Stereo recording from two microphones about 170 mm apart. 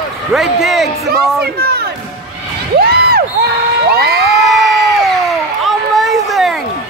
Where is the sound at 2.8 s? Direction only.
65° right (ahead or behind).